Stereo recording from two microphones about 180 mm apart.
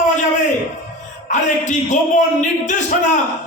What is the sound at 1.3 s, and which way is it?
Speech, 40° left (ahead or behind).